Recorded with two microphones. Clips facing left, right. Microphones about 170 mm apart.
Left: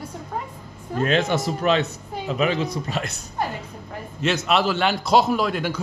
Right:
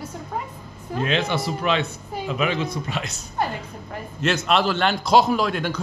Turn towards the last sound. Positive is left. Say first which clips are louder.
# even
turn(degrees=5)  # may be behind; listen again after turning